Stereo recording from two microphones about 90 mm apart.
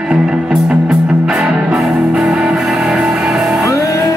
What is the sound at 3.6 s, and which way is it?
Music, 35° left (ahead or behind).